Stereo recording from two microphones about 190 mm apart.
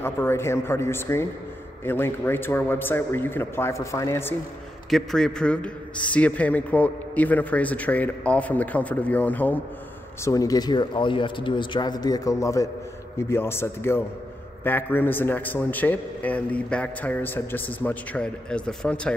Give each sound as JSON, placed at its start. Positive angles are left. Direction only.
{"t": 0.0, "sound": "a man's voice", "side_deg": 10}
{"t": 4.8, "sound": "a man's voice", "side_deg": 0}